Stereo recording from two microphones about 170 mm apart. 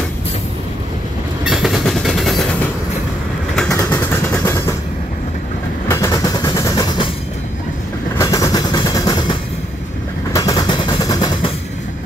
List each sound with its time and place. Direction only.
1.4 s train: 5° right (ahead or behind)
3.7 s vehicle: 15° left (ahead or behind)
5.9 s train: 20° left (ahead or behind)
8.2 s train: 20° left (ahead or behind)
10.3 s a sound: 25° left (ahead or behind)